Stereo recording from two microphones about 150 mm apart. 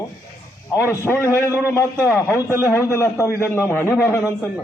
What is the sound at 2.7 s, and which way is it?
A man's voice, 20° left (ahead or behind).